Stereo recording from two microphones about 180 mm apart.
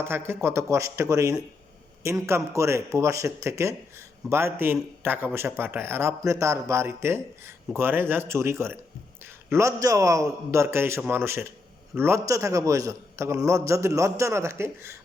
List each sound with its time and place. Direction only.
0.0 s speech: 15° right (ahead or behind)